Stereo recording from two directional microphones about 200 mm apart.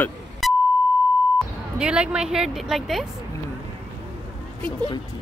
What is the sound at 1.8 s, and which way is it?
A woman's voice, 5° right (ahead or behind).